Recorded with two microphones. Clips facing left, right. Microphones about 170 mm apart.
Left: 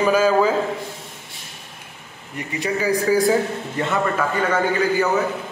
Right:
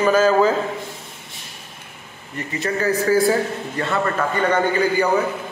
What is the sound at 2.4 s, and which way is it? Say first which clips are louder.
A man's voice: even; 15° left (ahead or behind).